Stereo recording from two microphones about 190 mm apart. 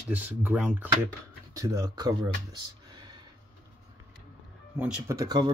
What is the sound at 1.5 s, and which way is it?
Speech, 20° right (ahead or behind).